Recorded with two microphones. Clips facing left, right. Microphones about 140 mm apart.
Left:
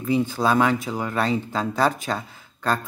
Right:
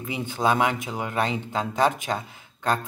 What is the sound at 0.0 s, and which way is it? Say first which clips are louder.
Speech: left 4 dB; 15° right (ahead or behind).